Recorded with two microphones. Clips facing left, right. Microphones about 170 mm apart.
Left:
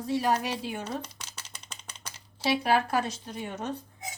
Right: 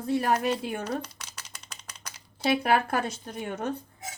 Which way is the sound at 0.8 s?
30° left (ahead or behind).